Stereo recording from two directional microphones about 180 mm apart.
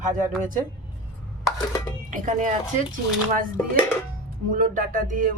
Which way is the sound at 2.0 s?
45° right (ahead or behind).